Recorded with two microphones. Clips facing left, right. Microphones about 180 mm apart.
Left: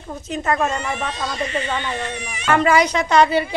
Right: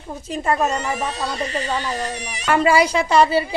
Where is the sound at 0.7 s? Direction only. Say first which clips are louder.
Right 1 dB; 40° right (ahead or behind).